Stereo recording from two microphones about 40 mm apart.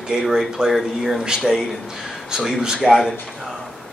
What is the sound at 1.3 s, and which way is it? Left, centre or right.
A man's voice, centre.